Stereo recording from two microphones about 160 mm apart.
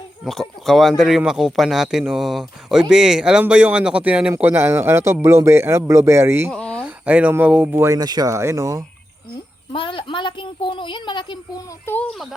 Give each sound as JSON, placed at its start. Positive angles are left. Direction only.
{"t": 0.3, "sound": "speech", "side_deg": 0}
{"t": 6.5, "sound": "a sound", "side_deg": 5}
{"t": 6.8, "sound": "speech", "side_deg": -10}
{"t": 9.7, "sound": "speech", "side_deg": 35}
{"t": 11.9, "sound": "speech", "side_deg": 15}